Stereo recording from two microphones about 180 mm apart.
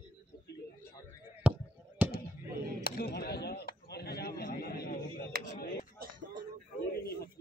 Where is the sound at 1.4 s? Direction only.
10° right (ahead or behind).